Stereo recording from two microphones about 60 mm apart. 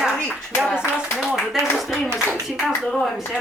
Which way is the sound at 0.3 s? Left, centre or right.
Left.